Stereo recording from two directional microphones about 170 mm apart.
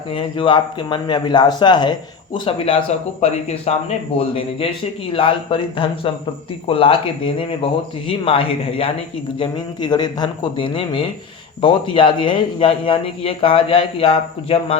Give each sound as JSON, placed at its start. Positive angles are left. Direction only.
{"t": 0.1, "sound": "a man's voice", "side_deg": 30}
{"t": 5.1, "sound": "a man's voice", "side_deg": 30}